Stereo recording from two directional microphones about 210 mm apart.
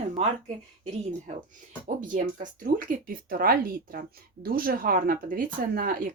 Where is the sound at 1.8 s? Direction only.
40° right (ahead or behind).